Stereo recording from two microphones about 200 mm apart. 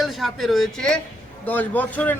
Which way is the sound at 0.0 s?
Centre (ahead or behind).